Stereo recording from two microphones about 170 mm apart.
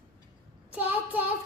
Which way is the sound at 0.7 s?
10° right (ahead or behind).